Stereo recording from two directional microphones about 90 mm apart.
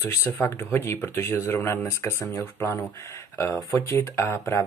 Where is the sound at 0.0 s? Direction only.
30° left (ahead or behind).